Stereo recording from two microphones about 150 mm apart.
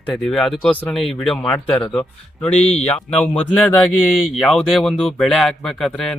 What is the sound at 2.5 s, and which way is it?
Speech, 45° left (ahead or behind).